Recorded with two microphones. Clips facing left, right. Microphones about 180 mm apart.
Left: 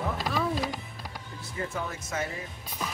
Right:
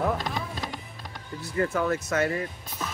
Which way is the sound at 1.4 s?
65° right (ahead or behind).